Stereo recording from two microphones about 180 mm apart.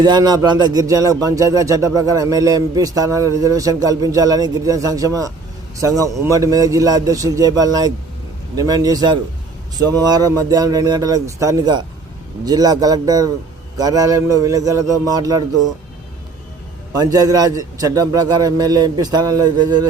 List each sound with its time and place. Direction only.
0.0 s speech: 25° right (ahead or behind)
16.9 s speech: 20° right (ahead or behind)